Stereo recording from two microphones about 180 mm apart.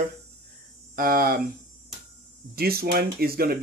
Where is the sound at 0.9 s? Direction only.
50° right (ahead or behind).